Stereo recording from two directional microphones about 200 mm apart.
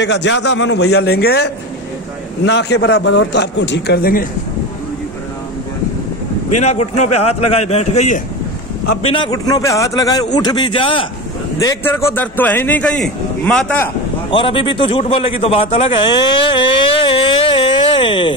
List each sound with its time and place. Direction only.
0.0 s a man's voice: 60° left (ahead or behind)
6.5 s a man's voice: 35° left (ahead or behind)
11.6 s a man's voice: 10° left (ahead or behind)
14.3 s a man's voice: 25° left (ahead or behind)